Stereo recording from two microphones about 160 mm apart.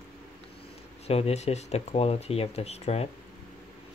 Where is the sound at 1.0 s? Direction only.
40° left (ahead or behind).